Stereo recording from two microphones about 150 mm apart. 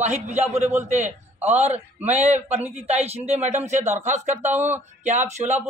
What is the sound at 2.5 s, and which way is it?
A man's voice, 45° right (ahead or behind).